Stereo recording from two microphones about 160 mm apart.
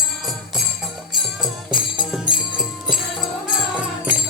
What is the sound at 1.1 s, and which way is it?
Music, centre (ahead or behind).